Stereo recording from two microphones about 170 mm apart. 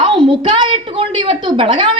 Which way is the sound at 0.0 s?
30° right (ahead or behind).